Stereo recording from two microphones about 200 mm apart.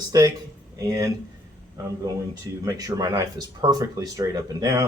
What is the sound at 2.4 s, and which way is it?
Speech, 20° right (ahead or behind).